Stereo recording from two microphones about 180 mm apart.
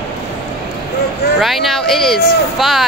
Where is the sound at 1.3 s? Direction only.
Centre (ahead or behind).